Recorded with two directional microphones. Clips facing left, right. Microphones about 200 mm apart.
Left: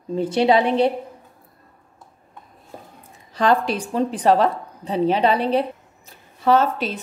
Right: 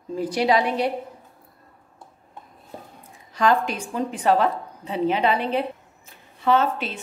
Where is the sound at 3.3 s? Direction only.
35° left (ahead or behind).